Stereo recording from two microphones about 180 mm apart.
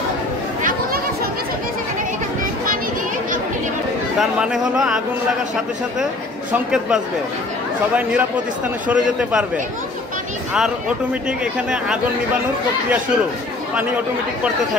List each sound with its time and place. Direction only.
0.6 s chatter: 50° right (ahead or behind)
4.2 s a man's voice: 5° right (ahead or behind)
6.5 s a man's voice: 5° right (ahead or behind)
11.2 s a man's voice: 5° right (ahead or behind)